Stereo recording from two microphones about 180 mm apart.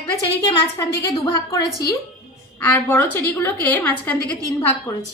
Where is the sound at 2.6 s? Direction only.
10° left (ahead or behind).